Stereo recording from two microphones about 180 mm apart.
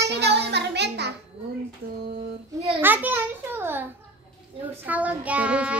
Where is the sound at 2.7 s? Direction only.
10° right (ahead or behind).